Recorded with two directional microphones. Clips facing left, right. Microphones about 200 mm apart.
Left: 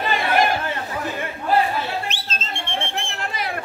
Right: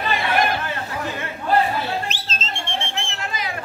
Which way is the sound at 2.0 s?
55° left (ahead or behind).